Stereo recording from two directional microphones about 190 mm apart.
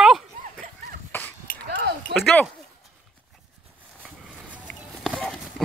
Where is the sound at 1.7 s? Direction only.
65° right (ahead or behind).